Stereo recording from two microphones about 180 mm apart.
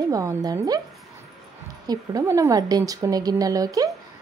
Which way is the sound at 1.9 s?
20° right (ahead or behind).